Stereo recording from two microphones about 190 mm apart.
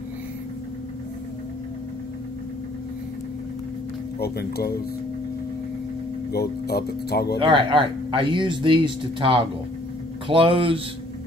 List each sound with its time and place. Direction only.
4.2 s speech: 55° left (ahead or behind)
6.3 s speech: 55° left (ahead or behind)
7.3 s speech: 25° right (ahead or behind)